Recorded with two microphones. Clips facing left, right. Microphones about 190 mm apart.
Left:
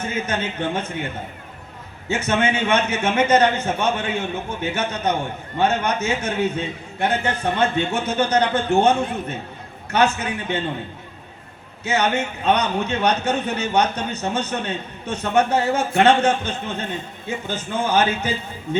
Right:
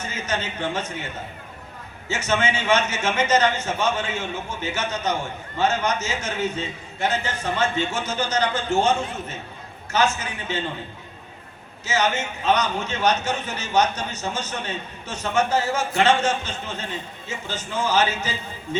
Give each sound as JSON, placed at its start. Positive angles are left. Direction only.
{"t": 0.0, "sound": "a man's voice", "side_deg": 55}
{"t": 2.0, "sound": "a man's voice", "side_deg": 55}
{"t": 11.9, "sound": "a man's voice", "side_deg": 60}